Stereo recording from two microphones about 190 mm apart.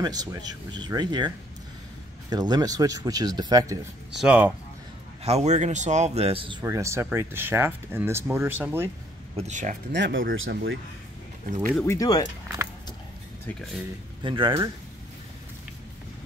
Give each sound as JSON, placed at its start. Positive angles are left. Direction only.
{"t": 0.0, "sound": "speech", "side_deg": -20}
{"t": 4.2, "sound": "speech", "side_deg": -5}
{"t": 5.2, "sound": "a man's voice", "side_deg": -35}
{"t": 6.6, "sound": "speech", "side_deg": -15}
{"t": 9.4, "sound": "a man's voice", "side_deg": -40}
{"t": 9.9, "sound": "speech", "side_deg": -70}
{"t": 11.7, "sound": "speech", "side_deg": 15}
{"t": 14.2, "sound": "speech", "side_deg": -25}